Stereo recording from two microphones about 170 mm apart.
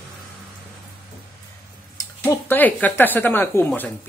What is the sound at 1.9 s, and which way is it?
Speech, 15° left (ahead or behind).